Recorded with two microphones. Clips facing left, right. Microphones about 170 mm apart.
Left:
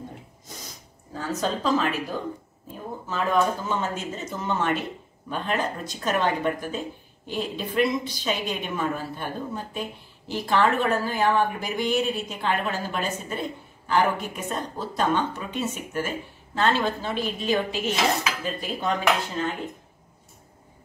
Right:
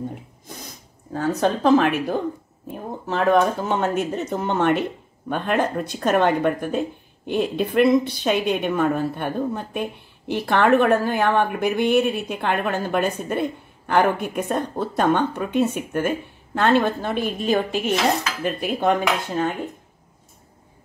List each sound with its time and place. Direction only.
1.1 s a woman's voice: 60° right (ahead or behind)